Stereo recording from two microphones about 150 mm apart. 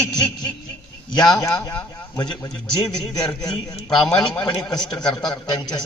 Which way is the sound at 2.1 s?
30° left (ahead or behind).